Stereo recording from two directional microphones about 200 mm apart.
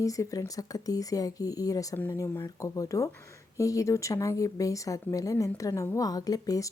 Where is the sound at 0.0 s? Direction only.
15° left (ahead or behind).